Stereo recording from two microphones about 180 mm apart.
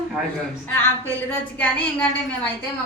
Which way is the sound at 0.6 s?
10° left (ahead or behind).